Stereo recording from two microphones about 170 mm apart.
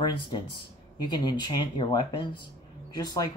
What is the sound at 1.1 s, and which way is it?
Speech, 25° left (ahead or behind).